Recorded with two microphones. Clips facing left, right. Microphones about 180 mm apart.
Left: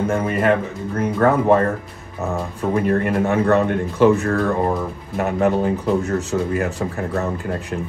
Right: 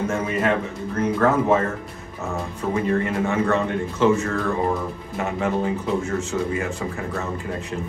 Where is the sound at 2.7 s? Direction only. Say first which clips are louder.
Left 3 dB; 60° left (ahead or behind).